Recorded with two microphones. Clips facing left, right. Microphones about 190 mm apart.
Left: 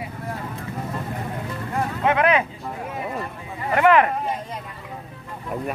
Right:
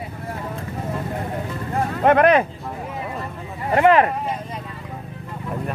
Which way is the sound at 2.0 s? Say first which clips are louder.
Right 5 dB; 50° right (ahead or behind).